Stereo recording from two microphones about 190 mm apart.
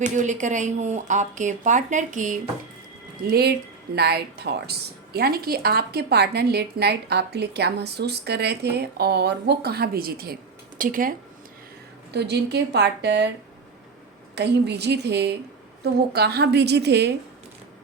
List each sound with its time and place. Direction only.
0.0 s a woman's voice: 40° right (ahead or behind)
3.2 s a woman's voice: 55° right (ahead or behind)
12.1 s a woman's voice: 60° right (ahead or behind)
14.3 s a woman's voice: 60° right (ahead or behind)